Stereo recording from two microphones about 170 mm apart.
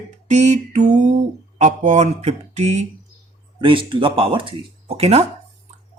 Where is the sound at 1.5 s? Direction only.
45° right (ahead or behind).